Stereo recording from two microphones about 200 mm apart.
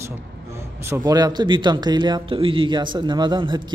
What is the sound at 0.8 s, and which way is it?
A man's voice, 15° right (ahead or behind).